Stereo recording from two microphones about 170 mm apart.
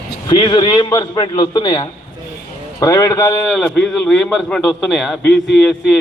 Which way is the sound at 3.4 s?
Centre (ahead or behind).